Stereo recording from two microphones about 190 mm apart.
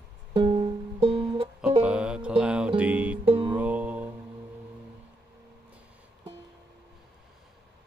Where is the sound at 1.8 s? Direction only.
5° right (ahead or behind).